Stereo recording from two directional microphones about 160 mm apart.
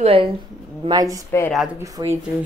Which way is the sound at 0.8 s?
25° right (ahead or behind).